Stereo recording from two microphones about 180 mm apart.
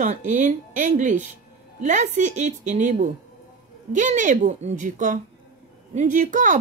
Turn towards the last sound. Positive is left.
turn(degrees=-45)  # may be behind; listen again after turning